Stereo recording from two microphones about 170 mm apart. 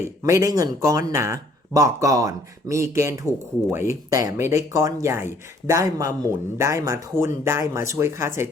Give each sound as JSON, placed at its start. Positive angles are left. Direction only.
{"t": 0.0, "sound": "speech", "side_deg": -20}